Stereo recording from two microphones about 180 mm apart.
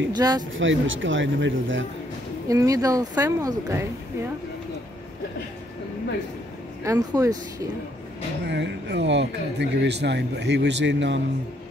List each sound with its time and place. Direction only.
0.1 s speech: 20° right (ahead or behind)
0.5 s a man's voice: 90° right
2.4 s speech: 20° right (ahead or behind)
6.8 s speech: 20° right (ahead or behind)
8.5 s speech: 70° right (ahead or behind)